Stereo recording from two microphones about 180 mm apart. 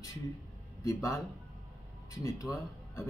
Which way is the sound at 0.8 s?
15° left (ahead or behind).